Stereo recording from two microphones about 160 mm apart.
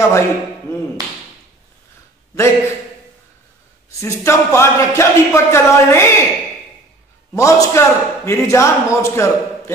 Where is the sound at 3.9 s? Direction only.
20° left (ahead or behind).